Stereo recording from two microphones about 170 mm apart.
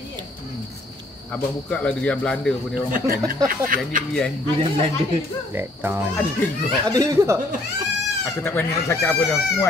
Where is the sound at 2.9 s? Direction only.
55° right (ahead or behind).